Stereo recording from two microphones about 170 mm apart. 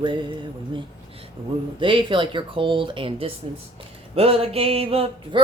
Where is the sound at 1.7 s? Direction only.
30° right (ahead or behind).